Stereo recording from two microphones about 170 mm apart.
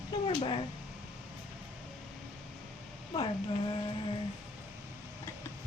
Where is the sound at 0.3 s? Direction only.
30° left (ahead or behind).